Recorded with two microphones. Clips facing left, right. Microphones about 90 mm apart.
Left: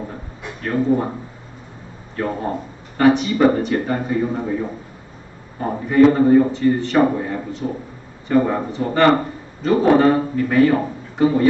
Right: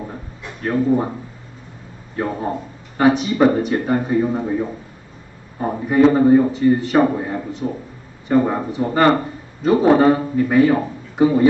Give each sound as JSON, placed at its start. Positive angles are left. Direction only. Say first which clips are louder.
{"t": 0.6, "sound": "speech", "louder": "right 1 dB", "side_deg": -10}
{"t": 2.2, "sound": "a man's voice", "louder": "even", "side_deg": -15}
{"t": 5.6, "sound": "a man's voice", "louder": "left 1 dB", "side_deg": -15}